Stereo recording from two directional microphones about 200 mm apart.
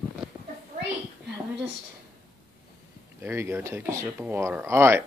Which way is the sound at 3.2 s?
10° right (ahead or behind).